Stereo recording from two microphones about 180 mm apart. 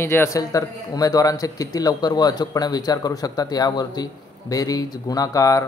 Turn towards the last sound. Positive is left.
turn(degrees=20)  # may be behind; listen again after turning